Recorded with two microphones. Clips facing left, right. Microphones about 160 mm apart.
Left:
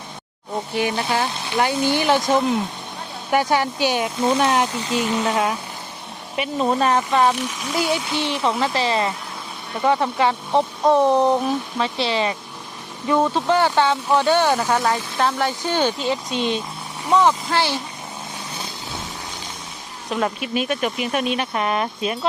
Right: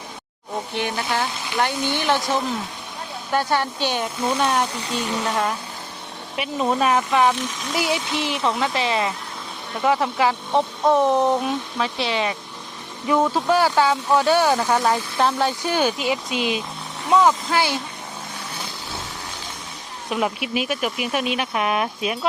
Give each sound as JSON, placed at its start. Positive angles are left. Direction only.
{"t": 0.8, "sound": "speech", "side_deg": 5}
{"t": 20.1, "sound": "speech", "side_deg": -10}